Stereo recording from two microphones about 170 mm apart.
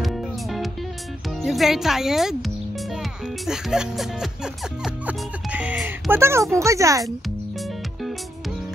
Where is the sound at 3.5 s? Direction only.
5° right (ahead or behind); by 7.0 s 20° right (ahead or behind).